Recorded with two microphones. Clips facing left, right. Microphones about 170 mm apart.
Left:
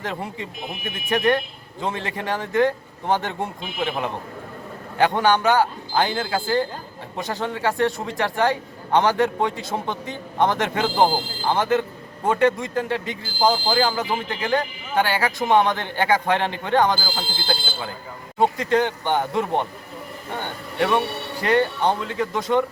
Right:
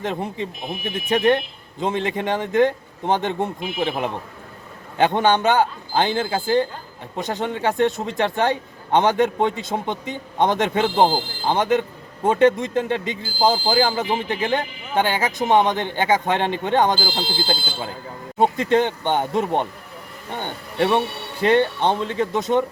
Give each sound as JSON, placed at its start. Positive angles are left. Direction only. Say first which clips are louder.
{"t": 0.0, "sound": "speech", "louder": "right 4 dB", "side_deg": -20}
{"t": 18.3, "sound": "speech", "louder": "right 2 dB", "side_deg": -25}